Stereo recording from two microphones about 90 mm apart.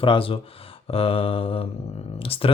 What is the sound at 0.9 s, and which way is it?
Mantra, 90° left.